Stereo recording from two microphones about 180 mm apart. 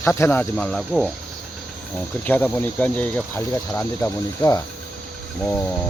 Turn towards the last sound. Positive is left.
turn(degrees=10)  # may be behind; listen again after turning